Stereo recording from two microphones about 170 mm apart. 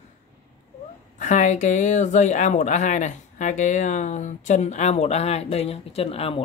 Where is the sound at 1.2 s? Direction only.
45° left (ahead or behind).